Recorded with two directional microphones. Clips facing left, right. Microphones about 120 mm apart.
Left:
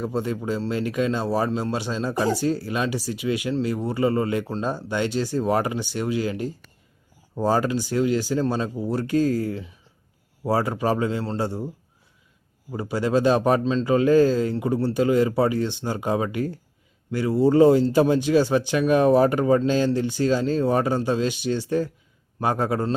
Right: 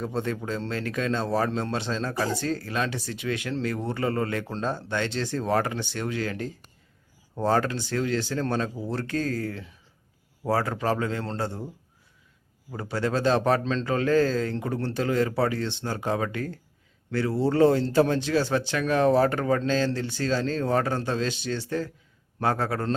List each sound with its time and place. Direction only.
0.0 s speech: 10° left (ahead or behind)
12.7 s speech: 10° left (ahead or behind)